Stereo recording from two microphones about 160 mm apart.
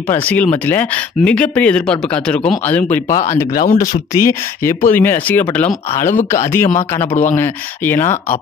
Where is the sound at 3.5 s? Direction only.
60° left (ahead or behind).